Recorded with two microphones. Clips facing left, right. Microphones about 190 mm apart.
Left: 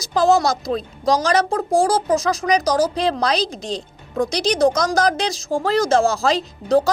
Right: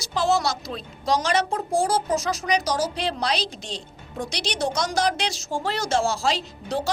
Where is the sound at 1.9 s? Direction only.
90° left.